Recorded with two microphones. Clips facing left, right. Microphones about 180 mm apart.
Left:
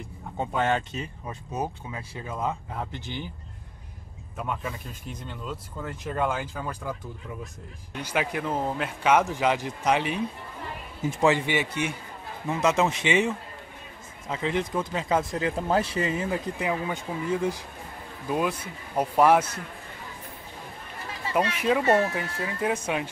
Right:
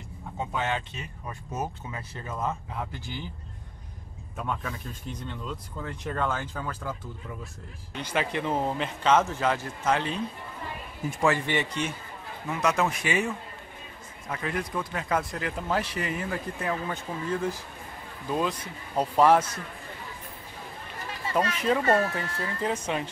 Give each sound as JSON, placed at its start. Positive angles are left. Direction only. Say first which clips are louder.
{"t": 0.6, "sound": "speech", "louder": "left 6 dB", "side_deg": 45}
{"t": 2.1, "sound": "speech", "louder": "left 1 dB", "side_deg": 15}
{"t": 5.4, "sound": "speech", "louder": "left 1 dB", "side_deg": 5}
{"t": 7.9, "sound": "speech", "louder": "left 1 dB", "side_deg": 10}
{"t": 11.5, "sound": "speech", "louder": "left 1 dB", "side_deg": 10}
{"t": 12.4, "sound": "speech", "louder": "left 3 dB", "side_deg": 25}
{"t": 21.3, "sound": "speech", "louder": "left 1 dB", "side_deg": 10}